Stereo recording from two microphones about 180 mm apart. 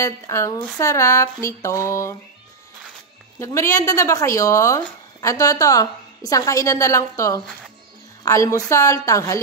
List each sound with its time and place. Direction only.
0.0 s speech: 15° left (ahead or behind)
3.3 s a woman's voice: 15° left (ahead or behind)